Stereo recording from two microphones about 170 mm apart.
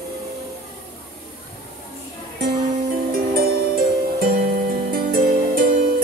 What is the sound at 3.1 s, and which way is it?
Music, 60° right (ahead or behind).